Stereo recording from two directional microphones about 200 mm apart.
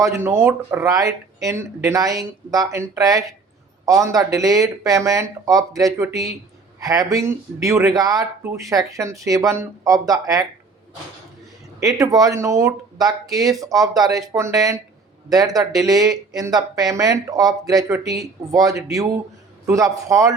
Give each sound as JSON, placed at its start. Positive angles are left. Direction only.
{"t": 0.0, "sound": "speech", "side_deg": -15}
{"t": 11.8, "sound": "speech", "side_deg": -20}